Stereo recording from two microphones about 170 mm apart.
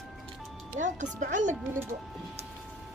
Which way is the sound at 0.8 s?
45° right (ahead or behind).